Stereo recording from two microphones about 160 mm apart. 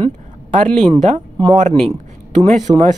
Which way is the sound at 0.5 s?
55° right (ahead or behind).